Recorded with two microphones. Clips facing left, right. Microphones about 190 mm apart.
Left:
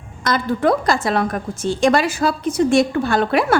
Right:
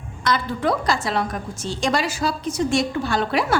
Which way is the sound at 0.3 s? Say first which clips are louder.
Left 4 dB; 50° left (ahead or behind).